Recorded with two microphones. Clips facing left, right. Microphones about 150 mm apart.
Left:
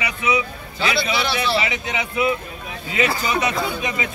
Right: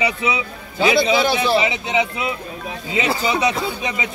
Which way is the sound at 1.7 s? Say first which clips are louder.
Right 4 dB; 30° right (ahead or behind).